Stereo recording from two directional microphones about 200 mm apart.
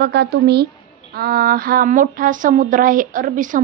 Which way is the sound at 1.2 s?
50° right (ahead or behind).